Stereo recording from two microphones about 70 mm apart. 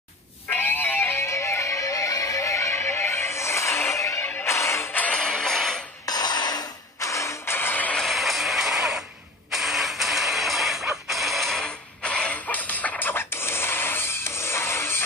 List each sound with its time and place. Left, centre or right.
0.5 s music: left
4.9 s music: centre
6.0 s cutlery: left
7.0 s printer: left
7.5 s music: left
7.9 s a sound: centre
12.0 s a sound: centre
13.1 s music: left